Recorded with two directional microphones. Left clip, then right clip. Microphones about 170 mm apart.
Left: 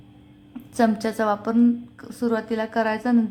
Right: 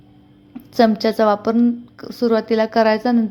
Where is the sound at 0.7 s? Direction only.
25° right (ahead or behind).